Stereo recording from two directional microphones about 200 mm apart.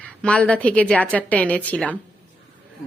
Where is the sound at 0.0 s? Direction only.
5° left (ahead or behind).